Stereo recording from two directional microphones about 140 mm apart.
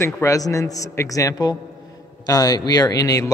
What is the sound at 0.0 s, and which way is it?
A man's voice, 20° left (ahead or behind).